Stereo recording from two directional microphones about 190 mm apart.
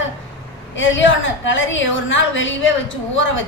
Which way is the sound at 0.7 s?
80° left.